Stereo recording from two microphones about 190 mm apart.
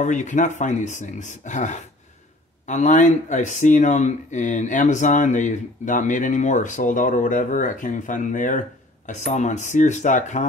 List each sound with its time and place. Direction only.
0.0 s speech: 40° left (ahead or behind)